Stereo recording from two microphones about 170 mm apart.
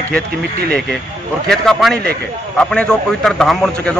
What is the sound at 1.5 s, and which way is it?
A man's voice, centre (ahead or behind).